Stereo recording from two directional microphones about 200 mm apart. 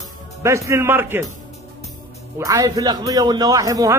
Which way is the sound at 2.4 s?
15° right (ahead or behind).